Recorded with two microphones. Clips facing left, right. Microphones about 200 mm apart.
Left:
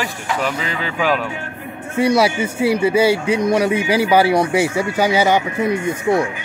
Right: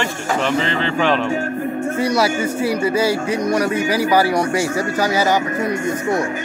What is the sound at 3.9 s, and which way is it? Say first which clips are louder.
Speech: left 3 dB; 25° left (ahead or behind).